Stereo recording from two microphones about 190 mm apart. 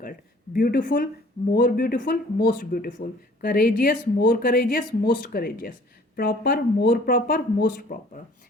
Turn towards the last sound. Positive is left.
turn(degrees=50)  # may be behind; listen again after turning